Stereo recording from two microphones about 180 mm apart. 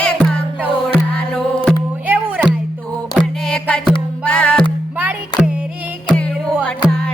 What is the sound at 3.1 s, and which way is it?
Music, centre (ahead or behind).